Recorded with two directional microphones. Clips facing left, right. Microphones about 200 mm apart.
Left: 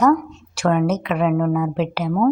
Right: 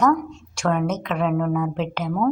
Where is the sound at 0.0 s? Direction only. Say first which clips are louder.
Left 3 dB; 5° left (ahead or behind).